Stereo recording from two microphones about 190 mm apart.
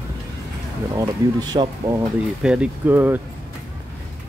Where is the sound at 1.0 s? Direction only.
20° right (ahead or behind).